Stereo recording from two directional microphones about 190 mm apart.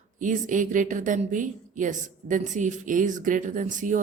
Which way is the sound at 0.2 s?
40° right (ahead or behind).